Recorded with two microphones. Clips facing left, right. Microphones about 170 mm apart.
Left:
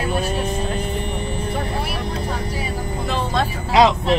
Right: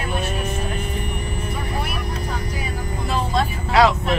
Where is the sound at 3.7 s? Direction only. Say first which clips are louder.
Left 2 dB; 20° left (ahead or behind).